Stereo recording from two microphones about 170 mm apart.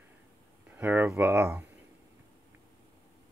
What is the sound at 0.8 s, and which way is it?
Speech, 10° right (ahead or behind).